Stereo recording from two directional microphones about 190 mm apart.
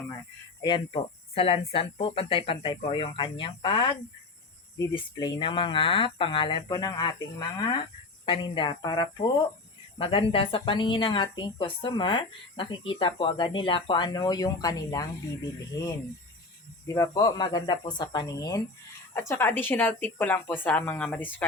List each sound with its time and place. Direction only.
1.4 s speech: 30° left (ahead or behind)
16.8 s speech: 15° left (ahead or behind)